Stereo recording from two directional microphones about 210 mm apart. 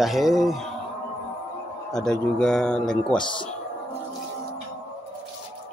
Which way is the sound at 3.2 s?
25° left (ahead or behind).